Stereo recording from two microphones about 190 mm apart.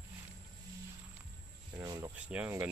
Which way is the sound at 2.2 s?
5° right (ahead or behind).